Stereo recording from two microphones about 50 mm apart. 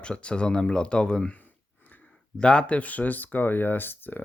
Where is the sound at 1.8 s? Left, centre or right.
Left.